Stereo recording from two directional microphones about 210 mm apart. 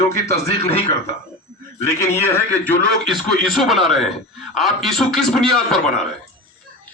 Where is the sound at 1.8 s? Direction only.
10° left (ahead or behind).